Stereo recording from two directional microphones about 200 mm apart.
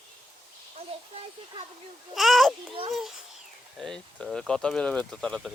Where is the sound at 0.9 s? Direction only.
30° right (ahead or behind).